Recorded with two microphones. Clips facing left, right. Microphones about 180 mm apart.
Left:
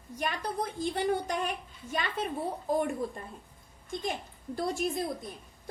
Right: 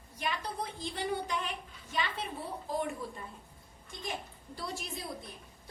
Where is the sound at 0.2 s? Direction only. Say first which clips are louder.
Left 4 dB; 50° left (ahead or behind).